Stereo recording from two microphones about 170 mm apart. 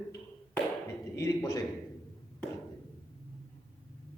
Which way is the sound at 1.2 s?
20° left (ahead or behind).